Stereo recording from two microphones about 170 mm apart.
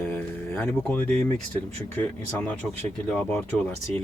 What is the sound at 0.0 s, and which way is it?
Speech, 10° left (ahead or behind).